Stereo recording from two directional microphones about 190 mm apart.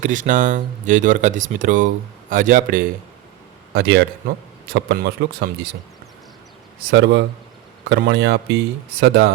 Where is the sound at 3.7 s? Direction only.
60° right (ahead or behind).